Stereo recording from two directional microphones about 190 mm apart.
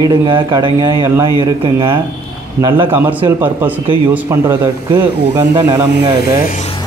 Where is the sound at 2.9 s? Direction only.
10° right (ahead or behind).